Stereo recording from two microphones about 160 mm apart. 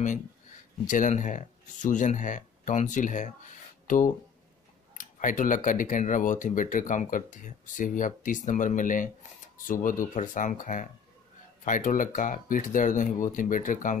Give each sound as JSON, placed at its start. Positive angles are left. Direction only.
{"t": 0.8, "sound": "speech", "side_deg": 50}